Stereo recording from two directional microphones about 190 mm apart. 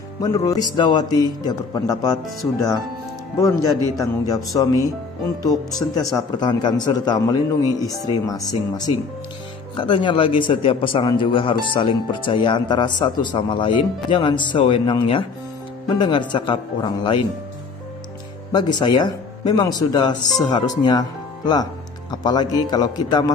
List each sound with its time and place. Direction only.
0.2 s a man's voice: 20° left (ahead or behind)
3.3 s a man's voice: 15° left (ahead or behind)
18.5 s a man's voice: 25° left (ahead or behind)